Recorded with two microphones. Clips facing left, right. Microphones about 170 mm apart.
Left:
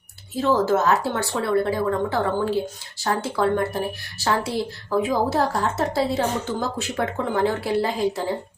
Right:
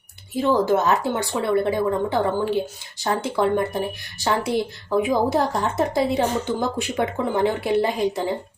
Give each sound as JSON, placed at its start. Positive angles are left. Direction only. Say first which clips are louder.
{"t": 0.3, "sound": "speech", "louder": "right 1 dB", "side_deg": -15}